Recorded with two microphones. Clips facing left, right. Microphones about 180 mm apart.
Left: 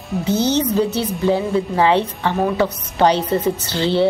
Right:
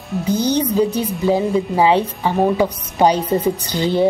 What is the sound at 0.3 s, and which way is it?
A woman's voice, 10° right (ahead or behind).